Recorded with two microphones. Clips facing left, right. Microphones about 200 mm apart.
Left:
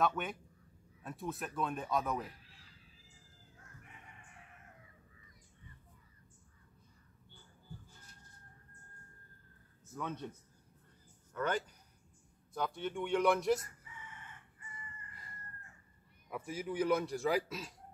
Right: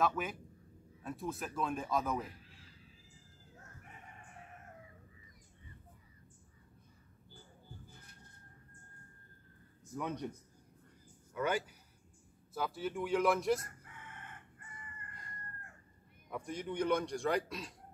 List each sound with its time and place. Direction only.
0.0 s a man's voice: centre (ahead or behind)
3.8 s chicken: 40° right (ahead or behind)
7.9 s a sound: 60° right (ahead or behind)
9.9 s a man's voice: 15° right (ahead or behind)
11.3 s a man's voice: 10° right (ahead or behind)
13.7 s crowing: 55° right (ahead or behind)
16.3 s a man's voice: 5° left (ahead or behind)